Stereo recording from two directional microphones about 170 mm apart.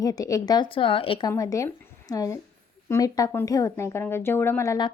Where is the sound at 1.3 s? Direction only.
20° left (ahead or behind).